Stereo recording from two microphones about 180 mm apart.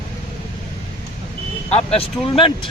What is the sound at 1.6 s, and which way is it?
Speech, 35° left (ahead or behind).